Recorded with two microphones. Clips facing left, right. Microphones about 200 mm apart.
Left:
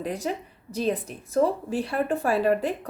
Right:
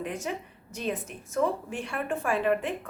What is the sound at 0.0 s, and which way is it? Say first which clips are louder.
A woman's voice: left 4 dB; 35° left (ahead or behind).